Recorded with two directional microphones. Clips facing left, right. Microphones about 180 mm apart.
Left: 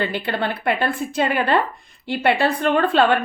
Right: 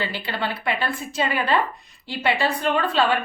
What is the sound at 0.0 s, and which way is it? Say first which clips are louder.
A woman's voice: left 4 dB; 55° left (ahead or behind).